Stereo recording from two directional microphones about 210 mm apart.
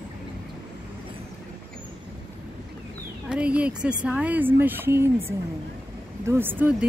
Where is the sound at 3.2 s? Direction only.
5° right (ahead or behind).